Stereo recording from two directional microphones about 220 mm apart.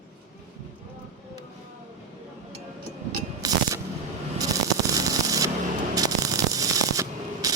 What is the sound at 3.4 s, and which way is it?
Music, 15° right (ahead or behind).